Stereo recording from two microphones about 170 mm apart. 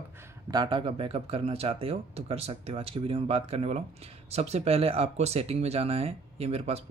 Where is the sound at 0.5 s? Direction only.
25° right (ahead or behind).